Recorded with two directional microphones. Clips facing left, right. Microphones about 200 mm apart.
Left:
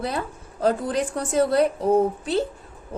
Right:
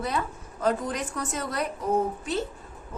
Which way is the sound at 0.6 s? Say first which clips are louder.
Left 5 dB; 30° left (ahead or behind).